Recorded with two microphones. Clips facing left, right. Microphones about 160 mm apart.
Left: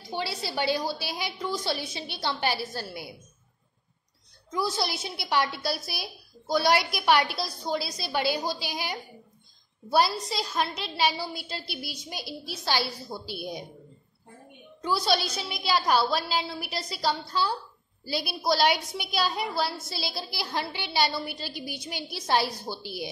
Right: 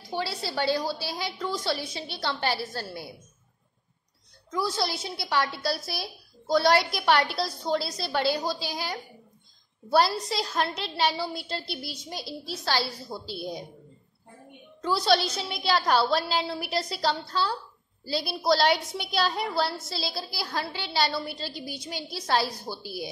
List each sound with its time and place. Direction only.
0.1 s a woman's voice: 20° left (ahead or behind)
4.5 s a woman's voice: 20° left (ahead or behind)
9.8 s a woman's voice: 5° left (ahead or behind)
14.8 s a woman's voice: 10° left (ahead or behind)
19.9 s a woman's voice: 15° left (ahead or behind)